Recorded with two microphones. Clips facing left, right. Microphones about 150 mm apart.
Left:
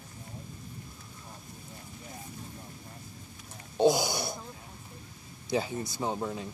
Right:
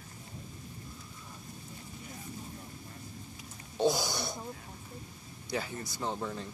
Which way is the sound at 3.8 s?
15° left (ahead or behind).